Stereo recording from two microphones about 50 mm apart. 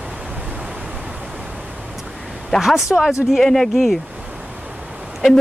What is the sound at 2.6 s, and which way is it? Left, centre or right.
Speech, centre.